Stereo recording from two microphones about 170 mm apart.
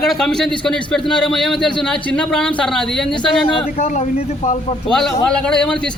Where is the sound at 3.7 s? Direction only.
40° left (ahead or behind).